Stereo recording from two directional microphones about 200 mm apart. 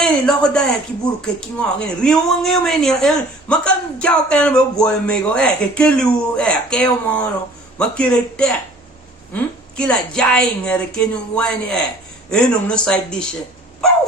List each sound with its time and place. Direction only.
0.0 s speech: 5° left (ahead or behind)
13.8 s dog: centre (ahead or behind)